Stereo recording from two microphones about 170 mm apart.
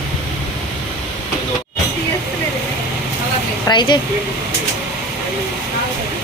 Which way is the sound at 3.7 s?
25° left (ahead or behind).